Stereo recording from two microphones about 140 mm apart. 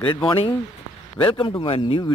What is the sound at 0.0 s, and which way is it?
Speech, 35° left (ahead or behind).